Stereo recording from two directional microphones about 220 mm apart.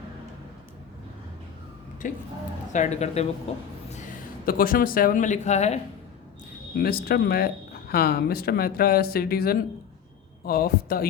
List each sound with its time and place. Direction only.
2.0 s speech: 35° left (ahead or behind)
6.7 s speech: 45° left (ahead or behind)